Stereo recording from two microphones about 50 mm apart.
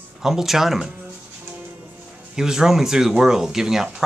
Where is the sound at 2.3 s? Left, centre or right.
Centre.